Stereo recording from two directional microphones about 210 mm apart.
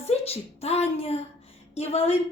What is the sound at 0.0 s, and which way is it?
A woman's voice, 30° left (ahead or behind).